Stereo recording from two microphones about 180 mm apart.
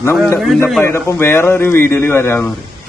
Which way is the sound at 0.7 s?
10° left (ahead or behind).